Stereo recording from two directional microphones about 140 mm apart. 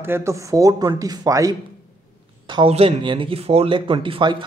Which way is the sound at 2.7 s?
45° right (ahead or behind).